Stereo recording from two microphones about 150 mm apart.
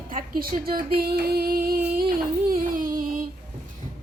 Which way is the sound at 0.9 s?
90° right.